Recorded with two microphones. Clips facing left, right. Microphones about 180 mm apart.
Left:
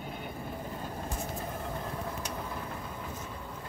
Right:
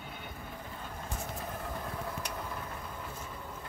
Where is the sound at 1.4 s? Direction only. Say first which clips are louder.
Left 2 dB; 15° left (ahead or behind).